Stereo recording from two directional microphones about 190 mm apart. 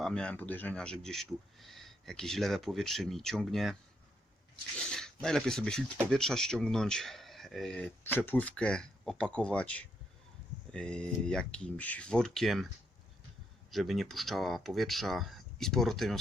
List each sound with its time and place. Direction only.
0.0 s speech: 5° left (ahead or behind)
4.8 s a sound: 5° left (ahead or behind)
5.2 s speech: 5° left (ahead or behind)
13.7 s speech: centre (ahead or behind)